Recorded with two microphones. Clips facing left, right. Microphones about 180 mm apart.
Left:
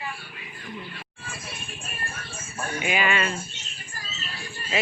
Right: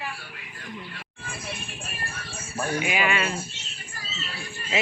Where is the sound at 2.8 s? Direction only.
10° right (ahead or behind).